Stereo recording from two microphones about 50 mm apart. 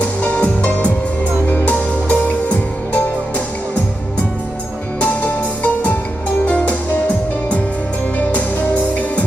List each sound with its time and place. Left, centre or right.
0.0 s music: left
4.9 s music: left
6.5 s music: left